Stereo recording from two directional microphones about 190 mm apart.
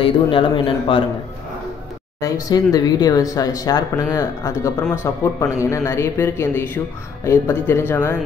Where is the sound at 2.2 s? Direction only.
20° left (ahead or behind).